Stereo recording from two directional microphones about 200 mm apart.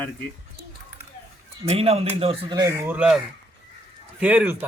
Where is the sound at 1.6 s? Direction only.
30° right (ahead or behind).